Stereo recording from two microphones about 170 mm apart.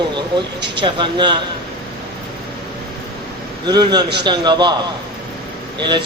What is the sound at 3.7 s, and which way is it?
A man's voice, 25° right (ahead or behind).